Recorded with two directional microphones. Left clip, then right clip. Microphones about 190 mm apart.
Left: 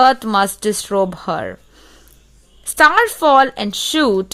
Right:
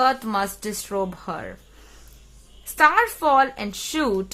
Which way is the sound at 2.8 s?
40° left (ahead or behind).